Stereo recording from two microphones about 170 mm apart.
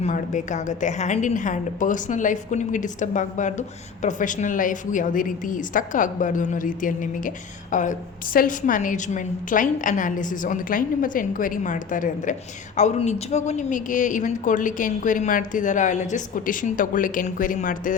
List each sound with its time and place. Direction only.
0.0 s a woman's voice: 45° left (ahead or behind)